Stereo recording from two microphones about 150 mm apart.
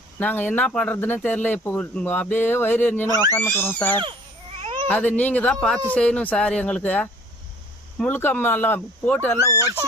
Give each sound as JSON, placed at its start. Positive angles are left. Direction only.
{"t": 0.2, "sound": "speech", "side_deg": 10}
{"t": 3.1, "sound": "speech", "side_deg": -25}
{"t": 3.3, "sound": "speech", "side_deg": 15}
{"t": 4.6, "sound": "baby cry", "side_deg": -35}
{"t": 4.9, "sound": "speech", "side_deg": 10}